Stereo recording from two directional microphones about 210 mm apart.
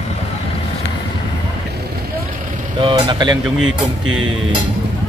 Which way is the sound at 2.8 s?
20° right (ahead or behind).